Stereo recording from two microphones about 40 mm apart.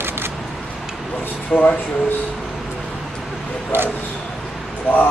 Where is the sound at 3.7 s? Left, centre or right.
Right.